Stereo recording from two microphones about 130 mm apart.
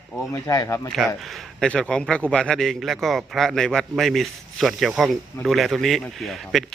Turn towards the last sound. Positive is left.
turn(degrees=0)  # may be behind; listen again after turning